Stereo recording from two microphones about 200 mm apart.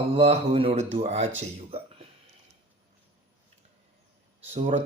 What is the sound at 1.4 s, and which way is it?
Speech, 30° right (ahead or behind).